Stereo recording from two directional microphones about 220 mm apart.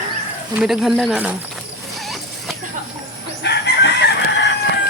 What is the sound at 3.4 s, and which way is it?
Chicken, 50° left (ahead or behind).